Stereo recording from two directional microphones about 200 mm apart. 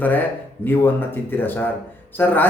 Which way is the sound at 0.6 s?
10° left (ahead or behind).